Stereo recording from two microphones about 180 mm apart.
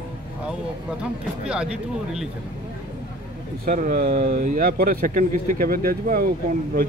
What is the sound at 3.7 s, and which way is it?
Speech, 55° right (ahead or behind).